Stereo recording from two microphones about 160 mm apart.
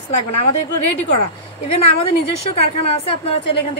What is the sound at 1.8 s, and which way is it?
Speech, 35° left (ahead or behind).